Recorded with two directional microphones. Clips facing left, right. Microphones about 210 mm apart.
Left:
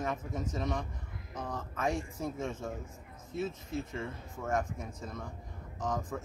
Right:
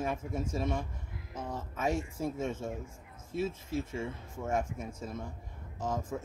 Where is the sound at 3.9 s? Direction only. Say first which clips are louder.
Right 2 dB; 10° right (ahead or behind).